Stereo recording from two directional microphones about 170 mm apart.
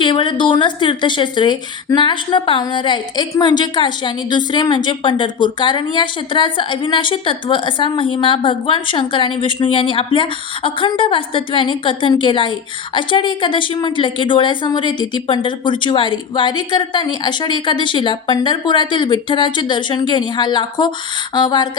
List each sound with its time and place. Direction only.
0.0 s speech: 30° left (ahead or behind)